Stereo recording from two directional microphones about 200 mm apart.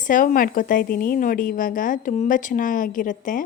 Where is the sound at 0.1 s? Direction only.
45° left (ahead or behind).